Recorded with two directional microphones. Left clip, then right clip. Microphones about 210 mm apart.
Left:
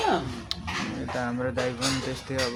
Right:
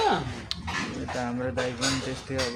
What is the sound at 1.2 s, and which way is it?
Speech, 10° left (ahead or behind).